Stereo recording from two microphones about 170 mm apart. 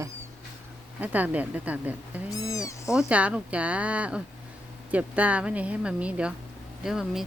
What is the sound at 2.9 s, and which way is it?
Speech, 5° right (ahead or behind).